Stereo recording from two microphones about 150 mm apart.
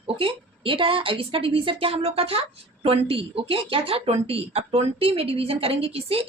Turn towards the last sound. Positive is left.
turn(degrees=-40)  # may be behind; listen again after turning